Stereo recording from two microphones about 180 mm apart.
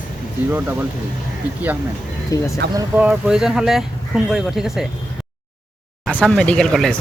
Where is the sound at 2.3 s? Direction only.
20° left (ahead or behind).